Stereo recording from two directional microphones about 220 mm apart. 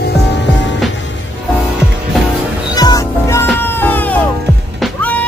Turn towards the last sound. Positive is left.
turn(degrees=10)  # may be behind; listen again after turning